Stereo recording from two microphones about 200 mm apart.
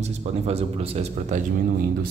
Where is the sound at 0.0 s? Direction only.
30° right (ahead or behind).